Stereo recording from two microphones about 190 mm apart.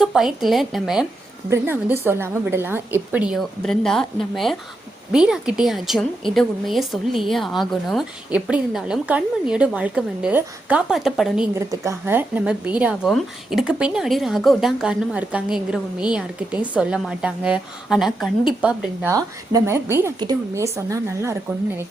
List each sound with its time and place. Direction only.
0.0 s a woman's voice: centre (ahead or behind)
1.5 s a woman's voice: 10° right (ahead or behind)
11.8 s a woman's voice: 15° right (ahead or behind)